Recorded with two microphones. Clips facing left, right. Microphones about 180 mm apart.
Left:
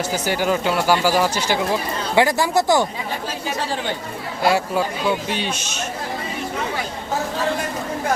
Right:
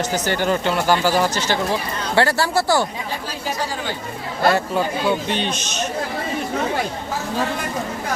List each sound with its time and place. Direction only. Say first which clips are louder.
0.0 s speech: even; 10° left (ahead or behind)
4.4 s speech: right 1 dB; 10° left (ahead or behind)